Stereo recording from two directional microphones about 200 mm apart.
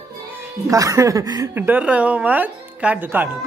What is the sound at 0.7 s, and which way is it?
A woman's voice, 15° right (ahead or behind).